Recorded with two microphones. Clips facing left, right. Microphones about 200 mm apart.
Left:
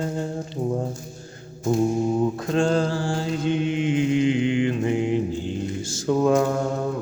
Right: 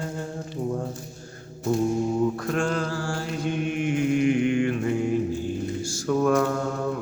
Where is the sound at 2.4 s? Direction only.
25° left (ahead or behind).